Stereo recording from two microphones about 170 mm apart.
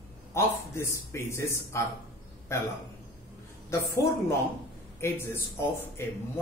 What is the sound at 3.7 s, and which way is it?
A man's voice, 15° left (ahead or behind).